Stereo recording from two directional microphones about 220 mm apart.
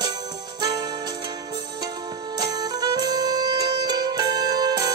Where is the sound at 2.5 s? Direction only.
20° right (ahead or behind).